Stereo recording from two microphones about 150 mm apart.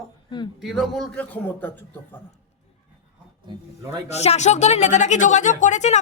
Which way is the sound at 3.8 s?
25° right (ahead or behind).